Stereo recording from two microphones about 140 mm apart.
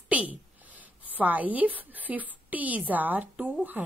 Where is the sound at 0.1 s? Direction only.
10° right (ahead or behind).